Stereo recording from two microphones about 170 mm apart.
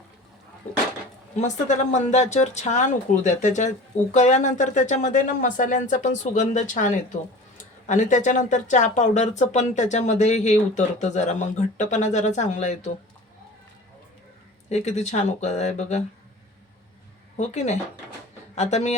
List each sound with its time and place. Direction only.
1.4 s speech: 45° left (ahead or behind)
14.7 s speech: 40° left (ahead or behind)
17.3 s speech: 40° left (ahead or behind)